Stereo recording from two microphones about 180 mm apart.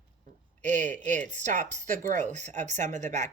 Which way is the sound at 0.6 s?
40° right (ahead or behind).